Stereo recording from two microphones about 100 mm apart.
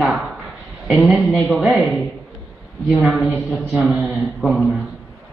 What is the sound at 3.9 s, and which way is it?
Speech, centre (ahead or behind).